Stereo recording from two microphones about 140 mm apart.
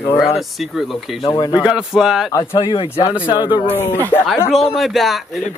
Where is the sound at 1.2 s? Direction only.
30° left (ahead or behind).